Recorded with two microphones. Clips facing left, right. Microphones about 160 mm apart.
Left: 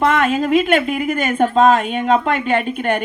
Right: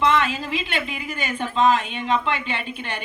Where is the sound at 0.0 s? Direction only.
50° left (ahead or behind).